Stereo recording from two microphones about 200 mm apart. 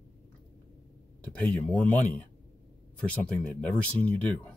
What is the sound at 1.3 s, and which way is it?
Speech, 5° left (ahead or behind).